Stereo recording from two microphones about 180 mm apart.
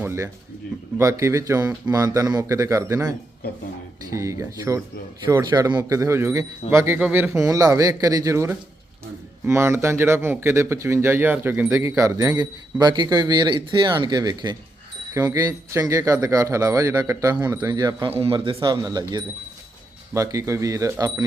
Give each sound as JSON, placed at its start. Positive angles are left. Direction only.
{"t": 0.0, "sound": "a man's voice", "side_deg": -15}
{"t": 18.1, "sound": "a man's voice", "side_deg": -30}